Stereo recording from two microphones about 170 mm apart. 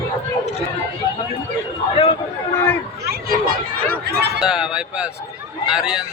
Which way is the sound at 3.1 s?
60° right (ahead or behind).